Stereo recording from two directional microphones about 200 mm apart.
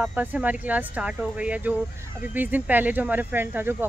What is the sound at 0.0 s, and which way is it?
Speech, 5° right (ahead or behind).